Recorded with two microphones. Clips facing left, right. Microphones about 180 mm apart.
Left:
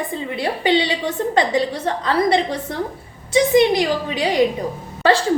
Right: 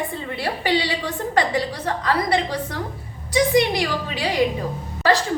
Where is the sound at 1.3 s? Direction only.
25° left (ahead or behind).